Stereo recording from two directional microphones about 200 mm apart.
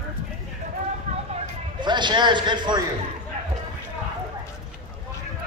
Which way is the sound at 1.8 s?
20° right (ahead or behind).